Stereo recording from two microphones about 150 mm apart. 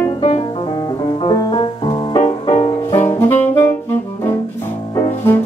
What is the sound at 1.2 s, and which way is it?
Music, 30° left (ahead or behind).